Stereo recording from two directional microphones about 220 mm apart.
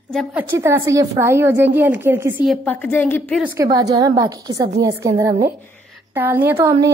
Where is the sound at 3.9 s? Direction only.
15° right (ahead or behind).